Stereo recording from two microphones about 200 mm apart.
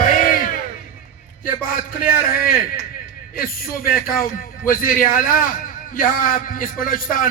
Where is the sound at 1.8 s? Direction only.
45° left (ahead or behind).